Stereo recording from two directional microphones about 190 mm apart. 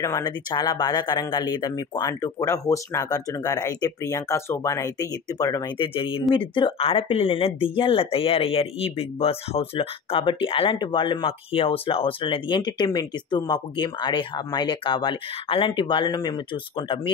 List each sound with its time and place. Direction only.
0.0 s speech: 20° left (ahead or behind)